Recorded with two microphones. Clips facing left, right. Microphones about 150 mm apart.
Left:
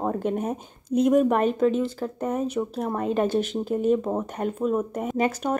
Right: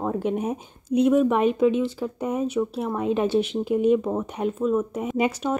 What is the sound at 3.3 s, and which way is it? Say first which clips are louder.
Speech: right 2 dB; 40° left (ahead or behind).